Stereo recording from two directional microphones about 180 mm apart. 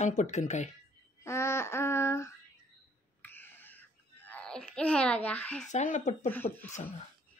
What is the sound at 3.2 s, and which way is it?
Wail, 10° left (ahead or behind).